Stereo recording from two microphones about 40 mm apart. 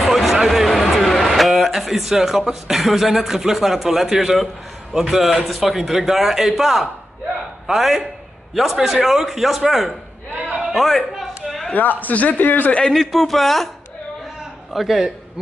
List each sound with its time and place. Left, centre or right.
0.0 s a sound: centre
4.9 s a man's voice: centre
11.1 s a sound: centre
11.7 s speech: left
12.9 s a man's voice: centre
14.7 s a man's voice: centre